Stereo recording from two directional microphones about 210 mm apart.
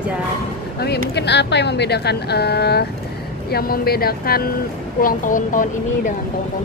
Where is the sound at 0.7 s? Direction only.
50° left (ahead or behind).